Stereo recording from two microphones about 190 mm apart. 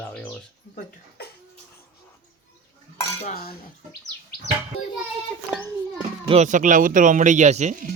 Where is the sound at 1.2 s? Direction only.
55° left (ahead or behind).